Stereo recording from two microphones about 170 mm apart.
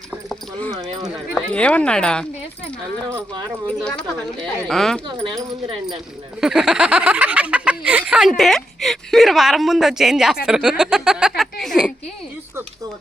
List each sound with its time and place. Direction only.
0.3 s speech: 5° left (ahead or behind)
3.8 s speech: 5° left (ahead or behind)
5.2 s speech: 30° right (ahead or behind)
6.4 s speech: 5° right (ahead or behind)